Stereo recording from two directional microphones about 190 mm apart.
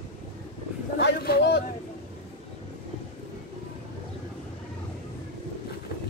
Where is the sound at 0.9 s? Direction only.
55° left (ahead or behind).